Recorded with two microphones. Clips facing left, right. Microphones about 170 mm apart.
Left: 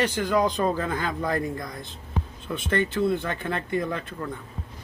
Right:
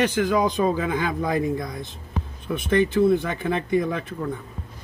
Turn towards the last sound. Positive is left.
turn(degrees=-10)  # may be behind; listen again after turning